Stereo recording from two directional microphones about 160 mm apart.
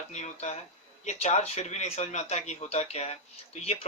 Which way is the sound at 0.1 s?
45° left (ahead or behind).